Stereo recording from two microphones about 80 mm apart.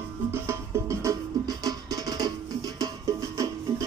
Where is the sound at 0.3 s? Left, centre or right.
Right.